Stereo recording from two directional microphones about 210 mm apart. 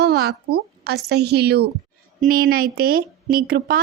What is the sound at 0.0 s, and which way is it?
A woman's voice, 50° right (ahead or behind).